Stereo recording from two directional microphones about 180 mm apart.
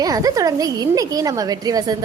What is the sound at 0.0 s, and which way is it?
A woman's voice, 20° right (ahead or behind).